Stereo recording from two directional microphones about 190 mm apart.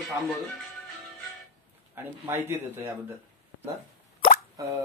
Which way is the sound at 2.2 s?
10° right (ahead or behind).